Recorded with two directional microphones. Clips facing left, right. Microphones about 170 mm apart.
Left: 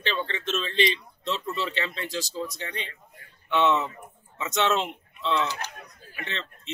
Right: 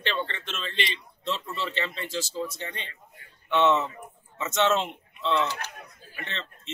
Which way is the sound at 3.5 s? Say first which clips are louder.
Right 1 dB; centre (ahead or behind).